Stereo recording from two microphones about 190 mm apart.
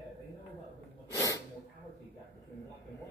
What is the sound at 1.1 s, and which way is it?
Sneeze, 15° left (ahead or behind).